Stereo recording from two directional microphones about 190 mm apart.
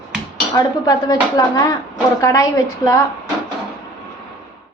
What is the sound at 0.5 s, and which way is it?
A woman's voice, 20° left (ahead or behind).